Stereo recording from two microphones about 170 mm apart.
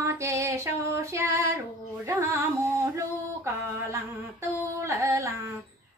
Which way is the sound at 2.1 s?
15° right (ahead or behind).